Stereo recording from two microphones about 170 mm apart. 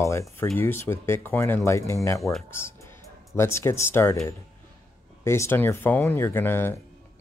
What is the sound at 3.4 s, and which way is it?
Speech, 15° left (ahead or behind).